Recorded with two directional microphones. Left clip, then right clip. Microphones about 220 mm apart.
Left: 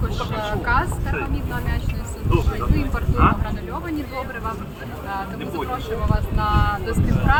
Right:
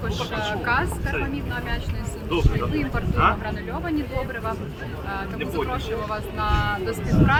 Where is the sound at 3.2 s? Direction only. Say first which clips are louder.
Left 1 dB; 55° right (ahead or behind).